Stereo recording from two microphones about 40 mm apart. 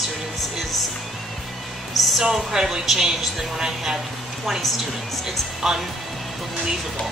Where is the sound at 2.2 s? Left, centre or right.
Centre.